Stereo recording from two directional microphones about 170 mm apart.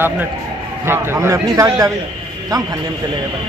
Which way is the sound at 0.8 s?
15° right (ahead or behind).